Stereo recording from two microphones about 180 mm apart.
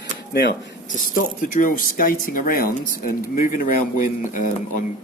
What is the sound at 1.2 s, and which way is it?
Speech, 50° left (ahead or behind).